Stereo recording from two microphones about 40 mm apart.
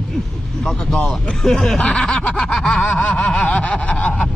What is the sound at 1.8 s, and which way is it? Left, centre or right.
Snicker, left.